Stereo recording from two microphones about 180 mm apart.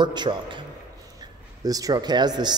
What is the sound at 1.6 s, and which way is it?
Speech, 20° right (ahead or behind).